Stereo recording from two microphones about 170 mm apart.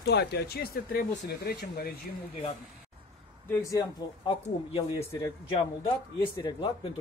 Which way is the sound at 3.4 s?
15° left (ahead or behind).